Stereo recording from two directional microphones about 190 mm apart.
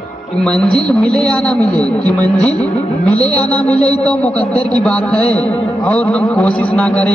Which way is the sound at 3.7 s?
30° left (ahead or behind).